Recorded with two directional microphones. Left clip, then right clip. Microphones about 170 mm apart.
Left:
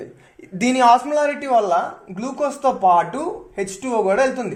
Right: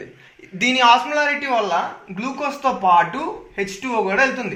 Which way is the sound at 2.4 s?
60° left (ahead or behind).